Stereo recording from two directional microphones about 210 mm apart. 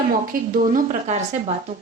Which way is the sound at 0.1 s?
40° right (ahead or behind).